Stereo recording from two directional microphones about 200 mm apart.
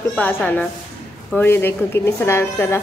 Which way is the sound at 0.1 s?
5° left (ahead or behind).